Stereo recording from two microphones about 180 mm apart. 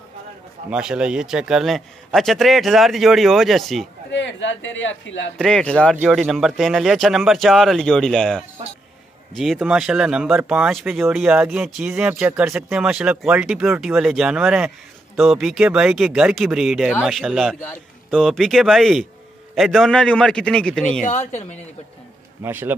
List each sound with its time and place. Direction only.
0.7 s speech: 5° right (ahead or behind)
4.1 s speech: 85° left
5.4 s speech: 5° left (ahead or behind)
21.0 s speech: 40° left (ahead or behind)
22.4 s speech: 10° right (ahead or behind)